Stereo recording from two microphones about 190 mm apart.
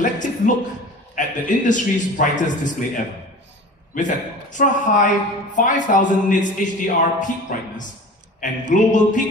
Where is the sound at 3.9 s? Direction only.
40° left (ahead or behind).